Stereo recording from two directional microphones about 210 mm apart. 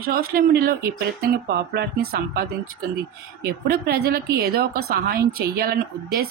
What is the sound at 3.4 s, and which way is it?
A woman's voice, 50° right (ahead or behind).